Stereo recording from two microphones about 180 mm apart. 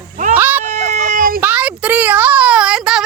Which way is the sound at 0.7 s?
40° right (ahead or behind).